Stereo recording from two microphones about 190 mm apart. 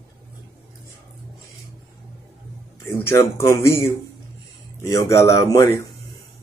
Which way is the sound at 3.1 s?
15° left (ahead or behind).